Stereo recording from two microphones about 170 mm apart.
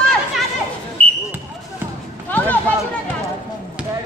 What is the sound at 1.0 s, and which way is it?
Basketball bounce, 35° right (ahead or behind).